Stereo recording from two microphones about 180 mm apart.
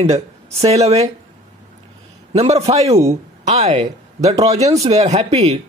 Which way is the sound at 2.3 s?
35° right (ahead or behind).